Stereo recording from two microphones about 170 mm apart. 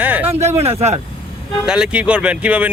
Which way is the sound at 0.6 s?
40° right (ahead or behind).